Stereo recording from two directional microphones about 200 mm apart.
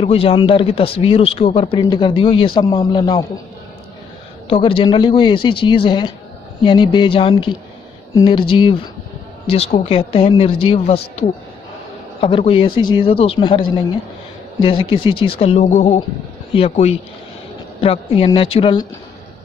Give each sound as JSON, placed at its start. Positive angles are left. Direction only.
{"t": 0.0, "sound": "a man's voice", "side_deg": 30}
{"t": 4.5, "sound": "a man's voice", "side_deg": 30}
{"t": 12.2, "sound": "a man's voice", "side_deg": 25}